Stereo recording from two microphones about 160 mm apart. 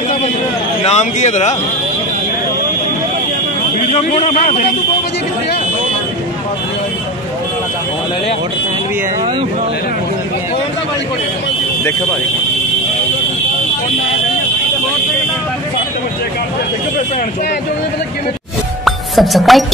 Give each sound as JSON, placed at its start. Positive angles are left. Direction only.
{"t": 0.8, "sound": "a man's voice", "side_deg": 45}
{"t": 3.9, "sound": "a man's voice", "side_deg": 45}
{"t": 18.9, "sound": "music", "side_deg": 0}